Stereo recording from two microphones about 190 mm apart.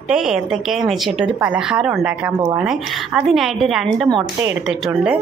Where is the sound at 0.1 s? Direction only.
5° right (ahead or behind).